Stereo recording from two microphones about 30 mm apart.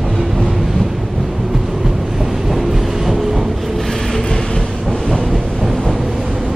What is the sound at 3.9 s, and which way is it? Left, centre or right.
Train, centre.